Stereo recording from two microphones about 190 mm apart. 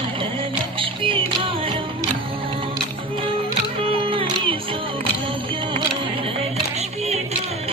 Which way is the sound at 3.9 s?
30° right (ahead or behind).